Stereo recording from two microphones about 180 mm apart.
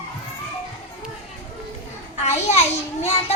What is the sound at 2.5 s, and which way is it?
Speech, 40° left (ahead or behind).